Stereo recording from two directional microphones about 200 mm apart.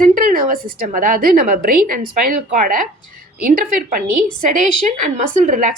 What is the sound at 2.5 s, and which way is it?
Speech, 40° right (ahead or behind).